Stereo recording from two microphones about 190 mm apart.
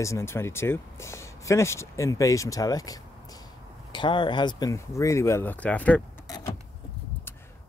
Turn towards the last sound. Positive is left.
turn(degrees=20)  # may be behind; listen again after turning